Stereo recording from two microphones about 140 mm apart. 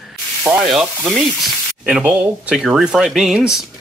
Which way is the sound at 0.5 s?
5° right (ahead or behind).